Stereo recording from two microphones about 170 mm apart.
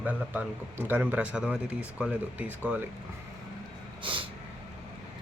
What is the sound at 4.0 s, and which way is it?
Snort, 30° right (ahead or behind).